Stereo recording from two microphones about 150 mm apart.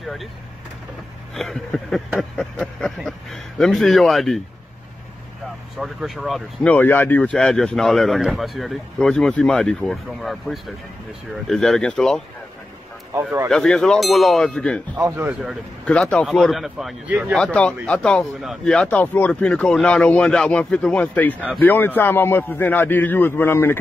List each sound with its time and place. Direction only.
0.0 s speech: centre (ahead or behind)
1.3 s a sound: centre (ahead or behind)
5.8 s speech: centre (ahead or behind)
13.2 s speech: 15° right (ahead or behind)
13.5 s speech: 5° left (ahead or behind)
15.0 s speech: 20° right (ahead or behind)
15.8 s speech: 5° left (ahead or behind)
17.4 s speech: 5° left (ahead or behind)